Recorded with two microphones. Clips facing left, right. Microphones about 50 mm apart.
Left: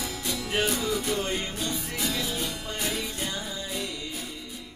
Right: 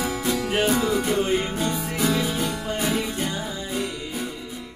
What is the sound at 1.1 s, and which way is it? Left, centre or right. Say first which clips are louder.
Music: right 7 dB; centre.